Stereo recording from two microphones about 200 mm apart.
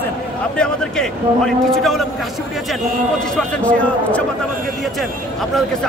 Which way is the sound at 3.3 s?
5° left (ahead or behind).